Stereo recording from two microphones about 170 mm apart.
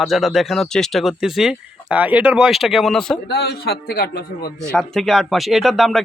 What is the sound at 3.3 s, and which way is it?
A man's voice, 70° left (ahead or behind).